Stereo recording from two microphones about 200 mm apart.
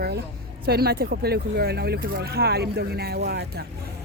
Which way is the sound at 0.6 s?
50° right (ahead or behind).